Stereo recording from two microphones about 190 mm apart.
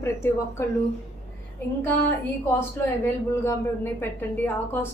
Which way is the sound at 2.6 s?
15° left (ahead or behind).